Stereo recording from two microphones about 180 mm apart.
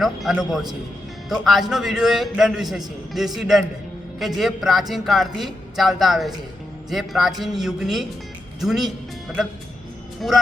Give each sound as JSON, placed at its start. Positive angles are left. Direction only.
{"t": 0.0, "sound": "speech", "side_deg": 0}
{"t": 10.2, "sound": "speech", "side_deg": 0}